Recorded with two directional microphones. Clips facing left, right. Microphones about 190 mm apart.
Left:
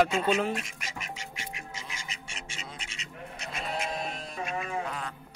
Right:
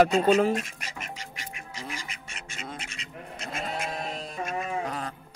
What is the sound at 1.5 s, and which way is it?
Quack, 60° right (ahead or behind).